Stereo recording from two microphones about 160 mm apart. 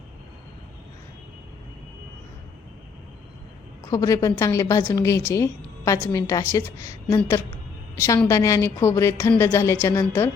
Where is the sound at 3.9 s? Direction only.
20° left (ahead or behind).